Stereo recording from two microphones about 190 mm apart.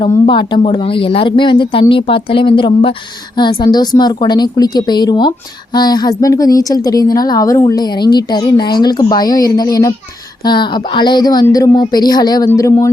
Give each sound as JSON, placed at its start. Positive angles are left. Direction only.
{"t": 0.3, "sound": "a woman's voice", "side_deg": 25}